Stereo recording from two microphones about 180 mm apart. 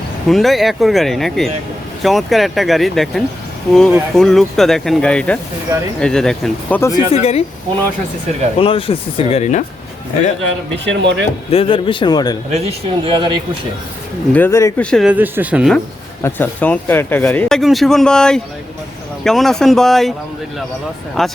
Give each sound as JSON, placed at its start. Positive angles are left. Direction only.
{"t": 0.3, "sound": "speech", "side_deg": 0}
{"t": 7.1, "sound": "speech", "side_deg": 35}
{"t": 8.5, "sound": "speech", "side_deg": 30}
{"t": 10.8, "sound": "speech", "side_deg": -75}
{"t": 11.5, "sound": "a man's voice", "side_deg": 30}
{"t": 12.5, "sound": "speech", "side_deg": -35}
{"t": 14.3, "sound": "speech", "side_deg": 15}
{"t": 14.8, "sound": "speech", "side_deg": 5}
{"t": 15.1, "sound": "speech", "side_deg": -10}
{"t": 16.2, "sound": "speech", "side_deg": 10}
{"t": 21.2, "sound": "speech", "side_deg": 0}